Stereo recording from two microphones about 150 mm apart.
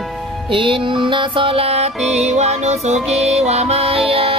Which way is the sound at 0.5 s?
35° right (ahead or behind).